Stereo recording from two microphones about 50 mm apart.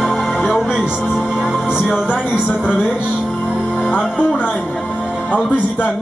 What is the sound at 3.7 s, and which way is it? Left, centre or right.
Music, left.